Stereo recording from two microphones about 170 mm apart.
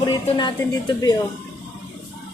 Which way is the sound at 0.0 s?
25° left (ahead or behind).